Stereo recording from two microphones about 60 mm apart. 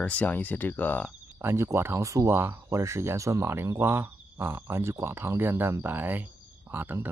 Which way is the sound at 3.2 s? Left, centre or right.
Right.